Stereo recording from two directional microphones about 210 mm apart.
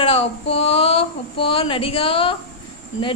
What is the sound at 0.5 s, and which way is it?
A woman's voice, 25° left (ahead or behind).